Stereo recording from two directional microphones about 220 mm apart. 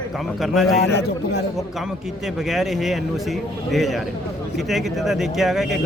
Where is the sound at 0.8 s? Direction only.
50° left (ahead or behind).